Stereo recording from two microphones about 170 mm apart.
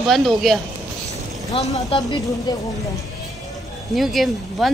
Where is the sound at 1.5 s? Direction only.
35° left (ahead or behind).